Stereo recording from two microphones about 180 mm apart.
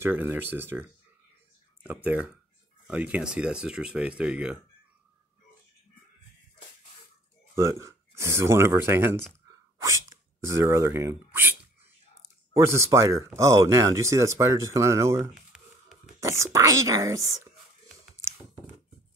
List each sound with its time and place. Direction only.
0.0 s speech: 10° right (ahead or behind)
7.5 s speech: 15° right (ahead or behind)
12.5 s speech: 15° right (ahead or behind)
15.3 s a sound: 5° right (ahead or behind)
16.2 s speech: 15° right (ahead or behind)